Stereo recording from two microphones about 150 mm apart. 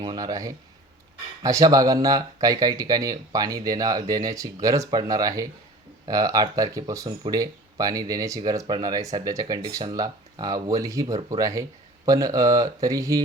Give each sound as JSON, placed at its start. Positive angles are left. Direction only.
{"t": 0.0, "sound": "speech", "side_deg": -25}